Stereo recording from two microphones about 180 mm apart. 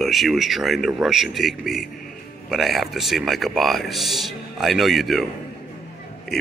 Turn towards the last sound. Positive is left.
turn(degrees=0)  # may be behind; listen again after turning